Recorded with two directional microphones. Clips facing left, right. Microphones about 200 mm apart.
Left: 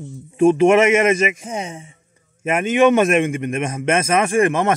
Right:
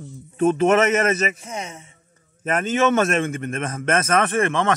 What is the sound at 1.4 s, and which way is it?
Speech, 30° left (ahead or behind).